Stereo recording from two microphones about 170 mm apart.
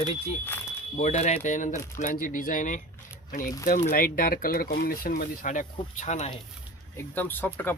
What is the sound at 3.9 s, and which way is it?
Speech, 55° left (ahead or behind).